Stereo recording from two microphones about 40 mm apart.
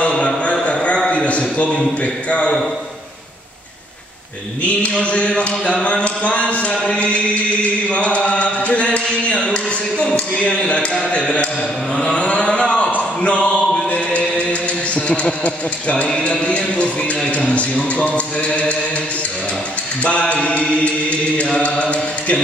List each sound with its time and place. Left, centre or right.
1.1 s a sound: left
2.2 s speech: left
4.6 s speech: left
12.0 s a sound: left
13.9 s chant: left
15.4 s speech: left
20.0 s speech: left